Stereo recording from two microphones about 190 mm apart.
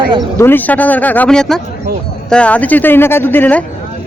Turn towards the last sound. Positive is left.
turn(degrees=10)  # may be behind; listen again after turning